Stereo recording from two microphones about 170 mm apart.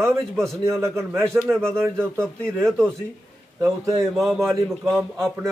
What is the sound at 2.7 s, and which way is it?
Speech, 5° left (ahead or behind).